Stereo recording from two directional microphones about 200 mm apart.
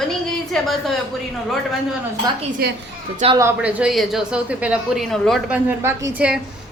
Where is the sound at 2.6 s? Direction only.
50° right (ahead or behind).